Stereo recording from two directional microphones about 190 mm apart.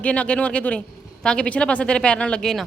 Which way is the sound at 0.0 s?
5° left (ahead or behind).